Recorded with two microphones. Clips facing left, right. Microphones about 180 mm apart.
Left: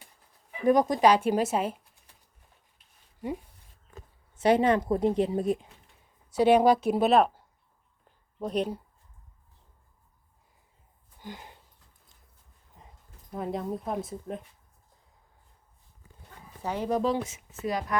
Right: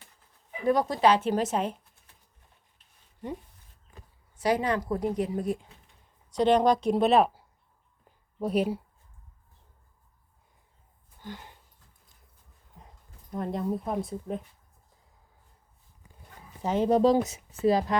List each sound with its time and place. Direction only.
0.6 s speech: 15° left (ahead or behind)
4.4 s a woman's voice: 25° left (ahead or behind)
6.3 s speech: 10° left (ahead or behind)
11.2 s a sound: 15° left (ahead or behind)
12.8 s a sound: centre (ahead or behind)
13.3 s speech: centre (ahead or behind)
16.6 s speech: 25° right (ahead or behind)